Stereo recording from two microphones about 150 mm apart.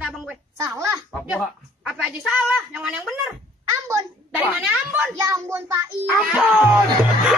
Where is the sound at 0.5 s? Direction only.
20° right (ahead or behind).